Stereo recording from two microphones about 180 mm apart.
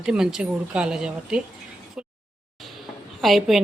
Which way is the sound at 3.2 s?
Centre (ahead or behind).